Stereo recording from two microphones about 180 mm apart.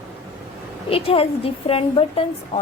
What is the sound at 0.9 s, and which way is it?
A woman's voice, 30° left (ahead or behind).